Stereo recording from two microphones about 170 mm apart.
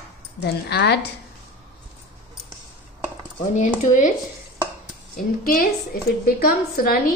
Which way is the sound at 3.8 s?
50° left (ahead or behind).